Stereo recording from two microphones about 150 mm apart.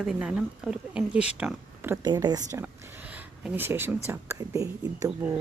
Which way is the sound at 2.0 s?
25° right (ahead or behind).